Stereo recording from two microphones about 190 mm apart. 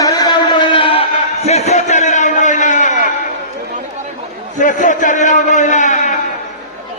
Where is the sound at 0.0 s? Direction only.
20° left (ahead or behind); by 3.2 s 40° left (ahead or behind).